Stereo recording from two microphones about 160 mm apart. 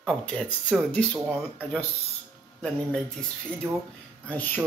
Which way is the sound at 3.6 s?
15° right (ahead or behind).